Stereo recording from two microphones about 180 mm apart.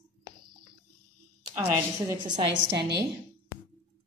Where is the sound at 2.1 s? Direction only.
25° right (ahead or behind).